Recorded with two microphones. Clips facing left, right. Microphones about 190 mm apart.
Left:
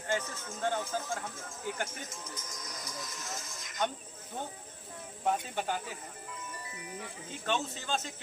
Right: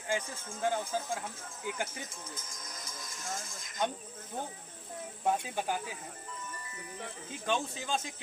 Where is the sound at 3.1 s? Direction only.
50° right (ahead or behind).